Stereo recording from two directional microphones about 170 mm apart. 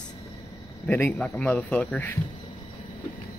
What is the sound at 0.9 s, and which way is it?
A man's voice, 10° left (ahead or behind).